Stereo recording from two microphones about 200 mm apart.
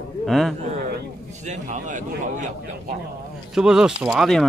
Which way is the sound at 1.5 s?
35° right (ahead or behind).